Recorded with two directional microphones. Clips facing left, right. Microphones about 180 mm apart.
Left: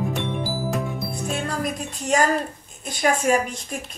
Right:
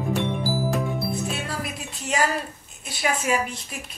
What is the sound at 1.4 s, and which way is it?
Music, 45° left (ahead or behind).